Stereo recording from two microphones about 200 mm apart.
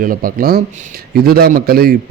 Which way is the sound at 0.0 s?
45° right (ahead or behind).